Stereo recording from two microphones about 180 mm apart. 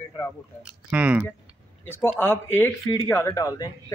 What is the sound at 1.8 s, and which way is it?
A man's voice, 15° left (ahead or behind).